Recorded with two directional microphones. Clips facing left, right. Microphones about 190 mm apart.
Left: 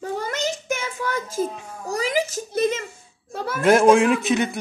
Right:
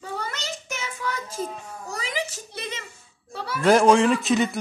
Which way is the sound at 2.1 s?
45° left (ahead or behind).